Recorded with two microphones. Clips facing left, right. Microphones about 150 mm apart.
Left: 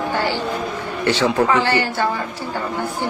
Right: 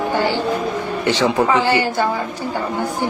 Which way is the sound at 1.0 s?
15° right (ahead or behind).